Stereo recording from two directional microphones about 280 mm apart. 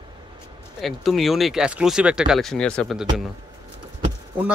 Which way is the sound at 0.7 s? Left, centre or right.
Centre.